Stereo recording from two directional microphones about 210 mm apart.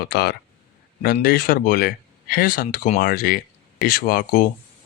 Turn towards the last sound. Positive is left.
turn(degrees=40)  # may be behind; listen again after turning